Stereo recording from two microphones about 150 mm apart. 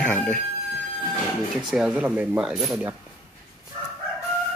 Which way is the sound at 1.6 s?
5° right (ahead or behind).